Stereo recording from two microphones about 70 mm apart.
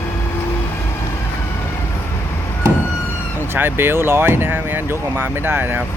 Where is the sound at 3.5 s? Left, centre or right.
Right.